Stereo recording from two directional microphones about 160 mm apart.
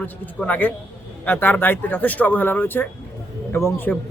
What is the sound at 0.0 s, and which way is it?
A man's voice, 10° left (ahead or behind).